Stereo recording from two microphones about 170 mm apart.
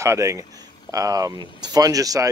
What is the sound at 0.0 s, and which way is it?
Speech, 15° right (ahead or behind).